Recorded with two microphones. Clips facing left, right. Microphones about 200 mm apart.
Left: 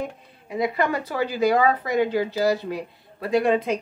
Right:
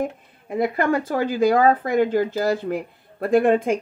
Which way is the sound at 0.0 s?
50° right (ahead or behind).